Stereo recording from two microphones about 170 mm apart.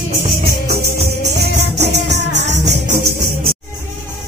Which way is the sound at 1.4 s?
85° right.